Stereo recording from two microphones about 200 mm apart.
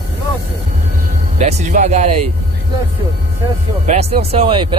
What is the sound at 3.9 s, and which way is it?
Speech, 30° right (ahead or behind).